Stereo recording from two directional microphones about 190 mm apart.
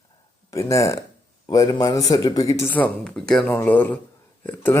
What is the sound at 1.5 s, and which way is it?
Speech, 20° left (ahead or behind).